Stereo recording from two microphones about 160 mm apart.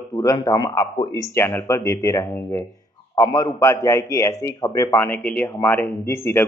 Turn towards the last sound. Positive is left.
turn(degrees=15)  # may be behind; listen again after turning